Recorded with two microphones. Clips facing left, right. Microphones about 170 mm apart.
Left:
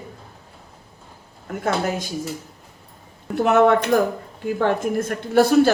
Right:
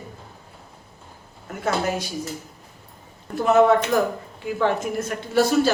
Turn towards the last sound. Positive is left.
turn(degrees=55)  # may be behind; listen again after turning